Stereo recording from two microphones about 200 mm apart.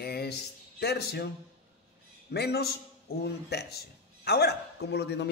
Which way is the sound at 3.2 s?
55° left (ahead or behind).